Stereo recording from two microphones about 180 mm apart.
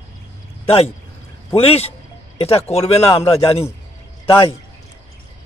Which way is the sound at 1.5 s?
35° left (ahead or behind).